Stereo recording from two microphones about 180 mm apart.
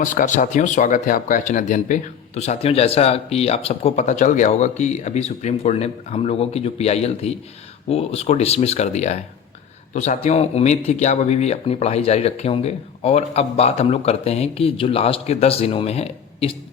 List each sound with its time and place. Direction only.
0.0 s speech: 45° left (ahead or behind)